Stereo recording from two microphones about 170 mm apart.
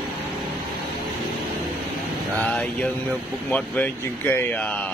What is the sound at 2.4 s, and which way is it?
Speech, 5° left (ahead or behind).